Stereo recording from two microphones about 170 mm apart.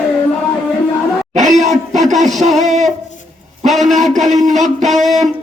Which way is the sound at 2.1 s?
Centre (ahead or behind).